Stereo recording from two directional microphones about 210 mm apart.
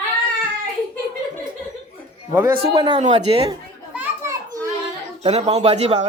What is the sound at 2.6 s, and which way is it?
Speech, 20° right (ahead or behind).